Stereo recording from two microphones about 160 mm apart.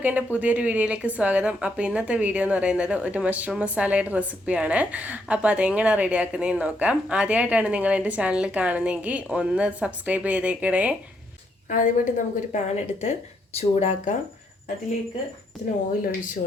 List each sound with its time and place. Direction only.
0.0 s a woman's voice: 10° right (ahead or behind)
11.7 s a woman's voice: 55° left (ahead or behind)